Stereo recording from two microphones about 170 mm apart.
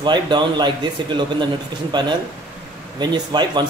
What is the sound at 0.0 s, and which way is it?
A man's voice, 25° right (ahead or behind).